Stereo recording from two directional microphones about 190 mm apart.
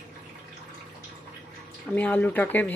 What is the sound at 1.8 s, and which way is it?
Speech, 5° left (ahead or behind).